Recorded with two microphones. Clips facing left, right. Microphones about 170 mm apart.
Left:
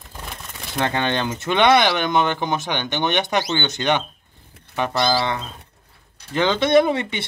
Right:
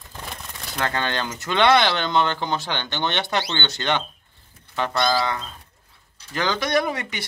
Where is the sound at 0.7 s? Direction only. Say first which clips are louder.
Left 4 dB; 20° left (ahead or behind).